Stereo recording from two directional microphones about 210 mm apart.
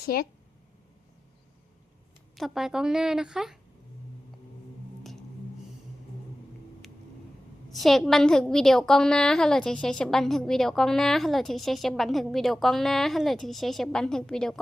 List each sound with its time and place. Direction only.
0.0 s speech: 45° left (ahead or behind)
2.3 s a woman's voice: centre (ahead or behind)
7.8 s a woman's voice: centre (ahead or behind)